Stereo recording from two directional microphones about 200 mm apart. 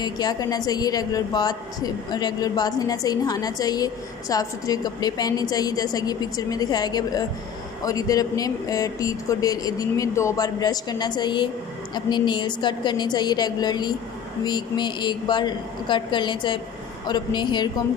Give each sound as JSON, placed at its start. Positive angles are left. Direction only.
{"t": 0.0, "sound": "a woman's voice", "side_deg": 20}